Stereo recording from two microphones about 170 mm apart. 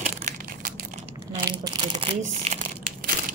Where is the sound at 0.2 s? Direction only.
55° right (ahead or behind).